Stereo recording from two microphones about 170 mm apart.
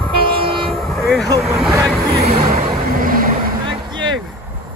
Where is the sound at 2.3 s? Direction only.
60° right (ahead or behind).